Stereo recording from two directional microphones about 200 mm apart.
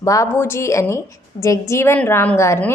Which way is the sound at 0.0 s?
15° left (ahead or behind).